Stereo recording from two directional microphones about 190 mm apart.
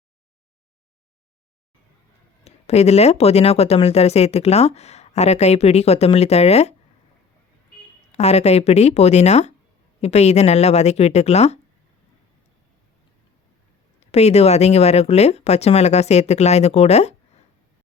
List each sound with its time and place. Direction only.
2.4 s speech: 35° left (ahead or behind)
8.1 s speech: 35° left (ahead or behind)
14.0 s speech: 35° left (ahead or behind)